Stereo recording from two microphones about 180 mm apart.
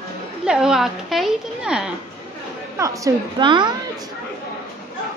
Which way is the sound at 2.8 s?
20° right (ahead or behind).